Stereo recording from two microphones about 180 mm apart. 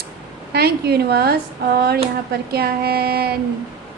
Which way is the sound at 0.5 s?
60° right (ahead or behind).